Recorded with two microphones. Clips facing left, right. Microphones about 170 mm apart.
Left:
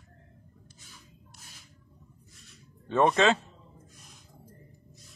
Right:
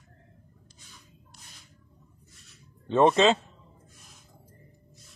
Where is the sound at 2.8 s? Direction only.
20° right (ahead or behind).